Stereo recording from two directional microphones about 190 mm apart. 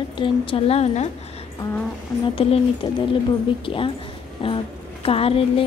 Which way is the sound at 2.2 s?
30° left (ahead or behind).